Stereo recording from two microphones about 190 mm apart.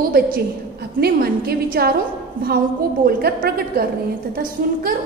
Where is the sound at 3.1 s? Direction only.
55° right (ahead or behind).